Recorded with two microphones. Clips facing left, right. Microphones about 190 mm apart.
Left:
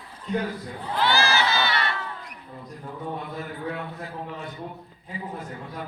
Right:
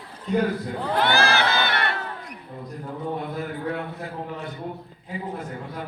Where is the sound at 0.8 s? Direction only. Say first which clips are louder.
Right 5 dB; 85° right.